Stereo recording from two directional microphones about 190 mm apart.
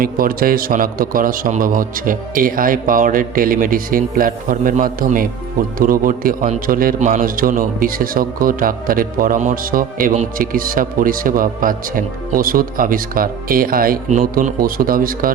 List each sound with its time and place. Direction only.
0.0 s a man's voice: 50° right (ahead or behind)